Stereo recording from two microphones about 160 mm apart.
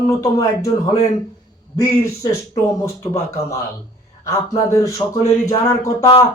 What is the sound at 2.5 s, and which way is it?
Speech, 20° left (ahead or behind).